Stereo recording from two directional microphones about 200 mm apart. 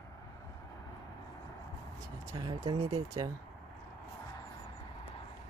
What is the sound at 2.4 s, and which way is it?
Speech, 25° right (ahead or behind).